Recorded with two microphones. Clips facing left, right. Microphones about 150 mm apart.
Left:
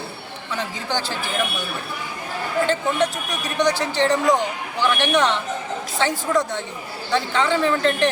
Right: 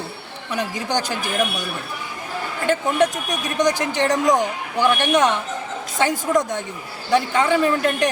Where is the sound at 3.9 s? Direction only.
15° right (ahead or behind).